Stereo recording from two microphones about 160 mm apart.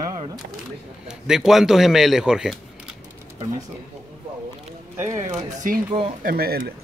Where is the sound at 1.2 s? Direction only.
5° right (ahead or behind).